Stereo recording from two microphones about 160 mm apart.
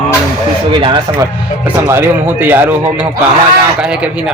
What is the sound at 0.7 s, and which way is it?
Speech, 30° right (ahead or behind).